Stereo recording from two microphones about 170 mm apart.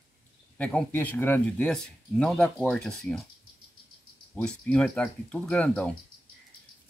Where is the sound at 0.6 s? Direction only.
10° left (ahead or behind).